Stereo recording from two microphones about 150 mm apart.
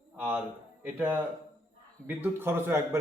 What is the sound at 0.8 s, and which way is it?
A man's voice, 10° right (ahead or behind).